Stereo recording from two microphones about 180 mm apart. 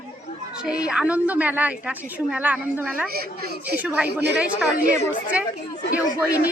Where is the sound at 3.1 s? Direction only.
55° right (ahead or behind).